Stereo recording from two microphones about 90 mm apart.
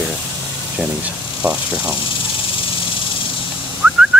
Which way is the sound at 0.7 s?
15° right (ahead or behind).